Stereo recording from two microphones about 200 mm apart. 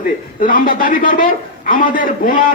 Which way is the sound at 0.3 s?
45° left (ahead or behind).